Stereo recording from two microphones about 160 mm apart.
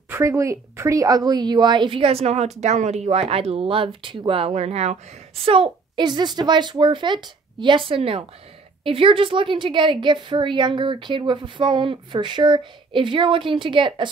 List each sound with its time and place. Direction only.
0.1 s a woman's voice: 20° right (ahead or behind)